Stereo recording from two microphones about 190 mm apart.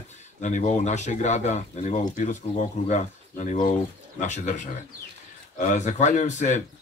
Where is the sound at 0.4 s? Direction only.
40° left (ahead or behind).